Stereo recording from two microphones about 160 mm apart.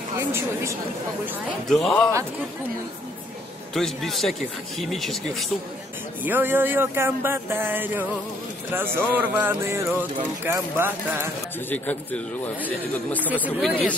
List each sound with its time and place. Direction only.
0.2 s a woman's voice: 15° right (ahead or behind)
1.7 s speech: centre (ahead or behind)
3.7 s speech: centre (ahead or behind)
6.2 s speech: 10° right (ahead or behind)
11.7 s speech: 10° left (ahead or behind)